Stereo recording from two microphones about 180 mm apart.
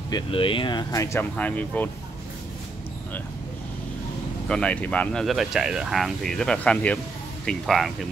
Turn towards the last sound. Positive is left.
turn(degrees=0)  # may be behind; listen again after turning